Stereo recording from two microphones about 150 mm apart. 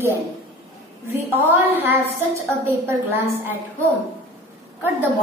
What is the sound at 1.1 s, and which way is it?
A woman's voice, 15° right (ahead or behind).